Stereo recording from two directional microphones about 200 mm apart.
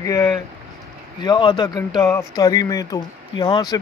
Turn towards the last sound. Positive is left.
turn(degrees=20)  # may be behind; listen again after turning